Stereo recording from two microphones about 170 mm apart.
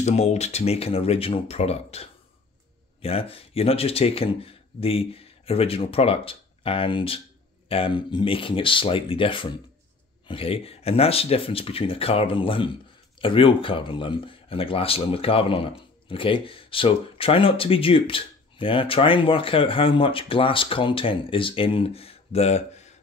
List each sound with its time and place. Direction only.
0.0 s speech: 40° left (ahead or behind)